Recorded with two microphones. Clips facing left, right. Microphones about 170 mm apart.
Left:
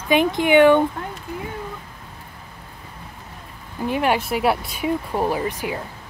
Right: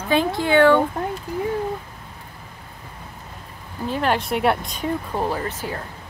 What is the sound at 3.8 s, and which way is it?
A woman's voice, 15° left (ahead or behind).